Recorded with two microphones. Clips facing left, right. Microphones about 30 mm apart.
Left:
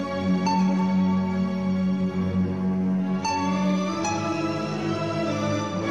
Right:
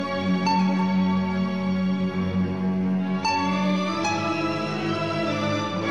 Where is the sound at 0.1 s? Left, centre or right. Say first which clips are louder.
Right 1 dB; right.